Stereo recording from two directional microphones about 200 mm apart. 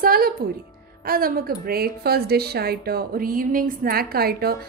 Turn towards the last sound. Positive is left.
turn(degrees=-50)  # may be behind; listen again after turning